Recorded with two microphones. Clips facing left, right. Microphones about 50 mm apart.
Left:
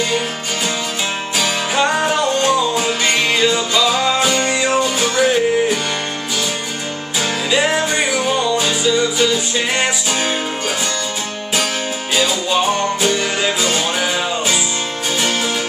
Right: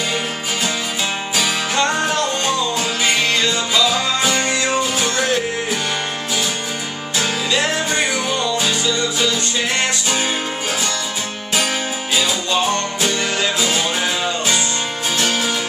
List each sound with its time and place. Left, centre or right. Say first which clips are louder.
1.8 s music: left 3 dB; centre
7.2 s music: left 2 dB; centre
12.2 s music: left 3 dB; centre